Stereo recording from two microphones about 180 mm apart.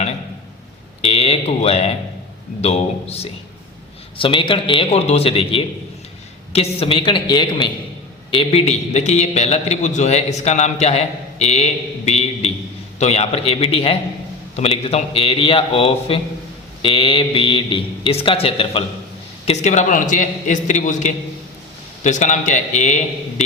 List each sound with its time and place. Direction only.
1.0 s a man's voice: 35° left (ahead or behind)
19.5 s a man's voice: 40° left (ahead or behind)